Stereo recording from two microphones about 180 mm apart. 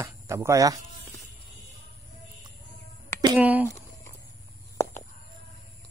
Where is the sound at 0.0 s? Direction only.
15° right (ahead or behind).